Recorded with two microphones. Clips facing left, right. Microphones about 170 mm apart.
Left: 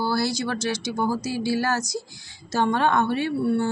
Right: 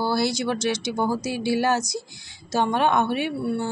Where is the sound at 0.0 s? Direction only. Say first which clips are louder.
Right 1 dB; 20° right (ahead or behind).